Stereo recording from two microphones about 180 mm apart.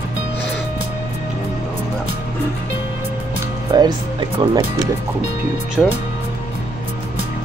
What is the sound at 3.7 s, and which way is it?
Music, 25° right (ahead or behind).